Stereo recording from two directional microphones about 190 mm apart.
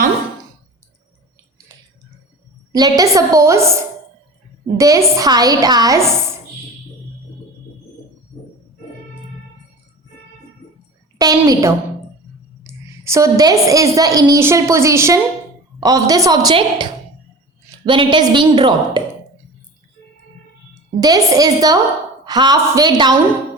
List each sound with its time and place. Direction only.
2.7 s a woman's voice: 20° right (ahead or behind)
11.2 s a sound: 20° right (ahead or behind)
12.6 s a woman's voice: 15° right (ahead or behind)
21.0 s a woman's voice: 20° right (ahead or behind)